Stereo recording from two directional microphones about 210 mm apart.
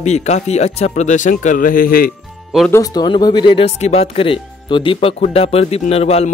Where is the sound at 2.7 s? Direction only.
20° left (ahead or behind).